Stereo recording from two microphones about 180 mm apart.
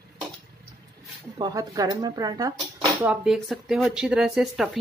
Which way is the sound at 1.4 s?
20° right (ahead or behind).